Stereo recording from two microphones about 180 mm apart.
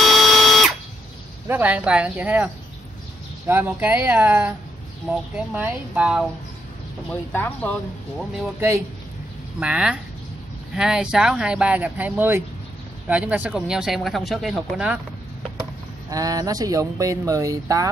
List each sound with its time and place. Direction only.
0.0 s a sound: centre (ahead or behind)
1.5 s speech: 10° right (ahead or behind)
7.1 s speech: 10° left (ahead or behind)
8.5 s speech: 15° right (ahead or behind)
16.1 s speech: 20° right (ahead or behind)